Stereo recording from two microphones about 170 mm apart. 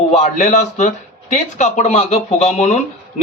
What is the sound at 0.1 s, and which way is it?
A man's voice, 40° left (ahead or behind).